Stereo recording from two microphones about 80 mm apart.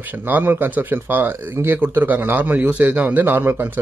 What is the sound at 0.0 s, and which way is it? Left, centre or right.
Speech, right.